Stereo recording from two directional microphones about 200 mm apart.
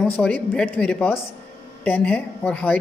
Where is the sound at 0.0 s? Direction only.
5° left (ahead or behind).